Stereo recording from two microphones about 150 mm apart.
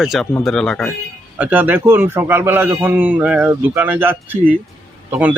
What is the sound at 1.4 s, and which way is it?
Speech, 10° right (ahead or behind).